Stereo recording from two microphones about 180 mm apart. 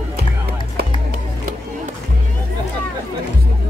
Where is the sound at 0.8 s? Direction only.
60° right (ahead or behind).